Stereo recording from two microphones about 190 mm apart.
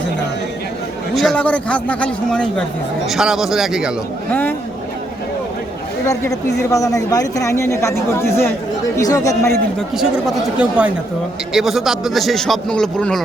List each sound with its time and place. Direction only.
1.1 s a man's voice: centre (ahead or behind)
4.3 s speech: 10° left (ahead or behind)
6.6 s speech: 15° left (ahead or behind)
9.9 s a man's voice: 5° right (ahead or behind)